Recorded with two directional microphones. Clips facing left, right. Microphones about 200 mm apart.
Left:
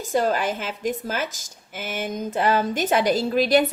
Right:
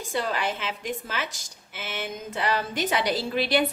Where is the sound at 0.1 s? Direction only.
45° left (ahead or behind).